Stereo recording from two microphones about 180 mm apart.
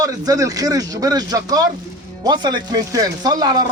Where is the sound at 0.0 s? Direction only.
20° right (ahead or behind).